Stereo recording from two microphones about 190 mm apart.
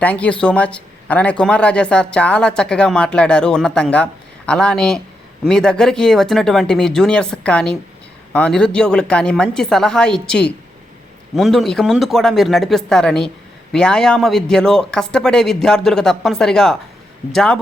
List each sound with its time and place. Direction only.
0.0 s speech: 5° left (ahead or behind)